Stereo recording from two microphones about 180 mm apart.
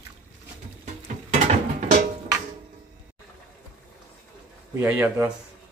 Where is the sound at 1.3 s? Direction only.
40° right (ahead or behind).